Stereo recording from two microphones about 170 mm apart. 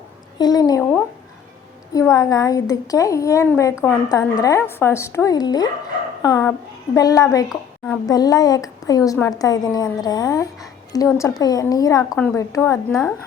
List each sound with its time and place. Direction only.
0.3 s a woman's voice: 25° left (ahead or behind)
1.9 s a woman's voice: 20° left (ahead or behind)
12.0 s a woman's voice: 5° left (ahead or behind)